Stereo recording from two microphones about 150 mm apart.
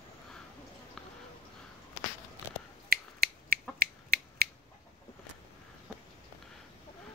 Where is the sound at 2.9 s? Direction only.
90° right.